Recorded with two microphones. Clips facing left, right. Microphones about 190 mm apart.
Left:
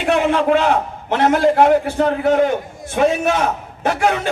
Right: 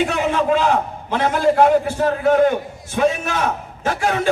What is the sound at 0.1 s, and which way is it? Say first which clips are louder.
A man's voice: left 3 dB; 60° left (ahead or behind).